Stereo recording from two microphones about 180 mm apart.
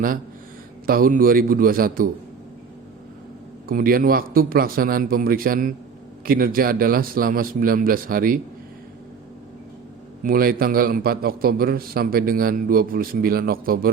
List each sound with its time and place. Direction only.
0.9 s a man's voice: 55° right (ahead or behind)
3.7 s a man's voice: 55° right (ahead or behind)
10.2 s a man's voice: 55° right (ahead or behind)